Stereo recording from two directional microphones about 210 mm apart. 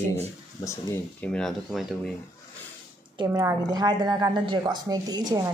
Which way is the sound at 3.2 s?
15° right (ahead or behind).